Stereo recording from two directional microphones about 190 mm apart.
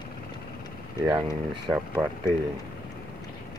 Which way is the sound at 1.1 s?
20° right (ahead or behind).